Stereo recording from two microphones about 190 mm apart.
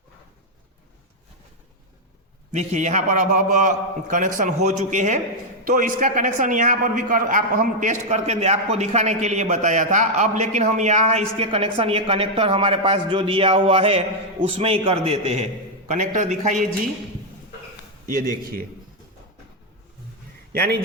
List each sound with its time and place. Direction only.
2.5 s a man's voice: 40° right (ahead or behind)
20.5 s a man's voice: 55° right (ahead or behind)